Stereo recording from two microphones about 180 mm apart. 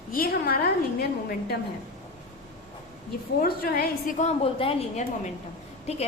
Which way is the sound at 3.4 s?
60° left (ahead or behind).